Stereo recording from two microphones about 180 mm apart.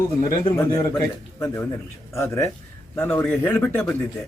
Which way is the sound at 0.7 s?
15° left (ahead or behind).